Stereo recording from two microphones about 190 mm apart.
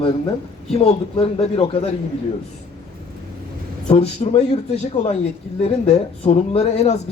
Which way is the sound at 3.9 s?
35° left (ahead or behind).